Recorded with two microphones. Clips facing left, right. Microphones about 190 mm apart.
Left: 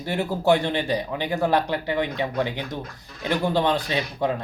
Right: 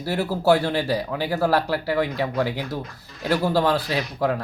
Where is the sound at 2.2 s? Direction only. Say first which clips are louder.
Right 2 dB; 5° right (ahead or behind).